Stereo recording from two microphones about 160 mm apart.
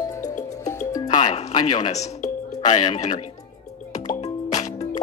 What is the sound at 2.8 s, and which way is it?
Speech, 45° left (ahead or behind).